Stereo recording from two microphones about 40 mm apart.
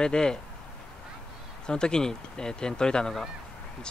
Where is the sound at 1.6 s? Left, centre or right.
Left.